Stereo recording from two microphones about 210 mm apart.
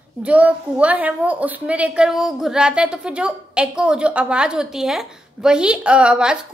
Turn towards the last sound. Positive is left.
turn(degrees=-5)  # may be behind; listen again after turning